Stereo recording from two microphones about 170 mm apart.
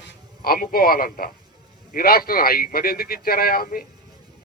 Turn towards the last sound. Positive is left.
turn(degrees=60)  # may be behind; listen again after turning